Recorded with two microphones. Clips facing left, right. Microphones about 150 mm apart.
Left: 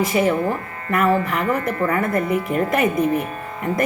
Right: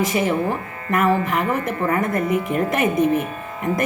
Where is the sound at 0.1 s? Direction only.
40° left (ahead or behind).